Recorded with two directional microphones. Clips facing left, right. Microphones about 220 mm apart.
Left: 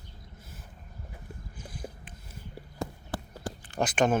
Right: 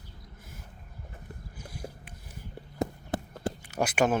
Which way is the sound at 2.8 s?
20° right (ahead or behind).